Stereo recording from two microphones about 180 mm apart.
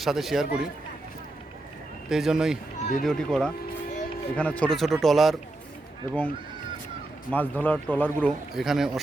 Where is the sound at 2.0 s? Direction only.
5° right (ahead or behind).